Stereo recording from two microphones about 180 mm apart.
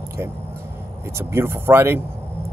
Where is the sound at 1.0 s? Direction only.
15° right (ahead or behind).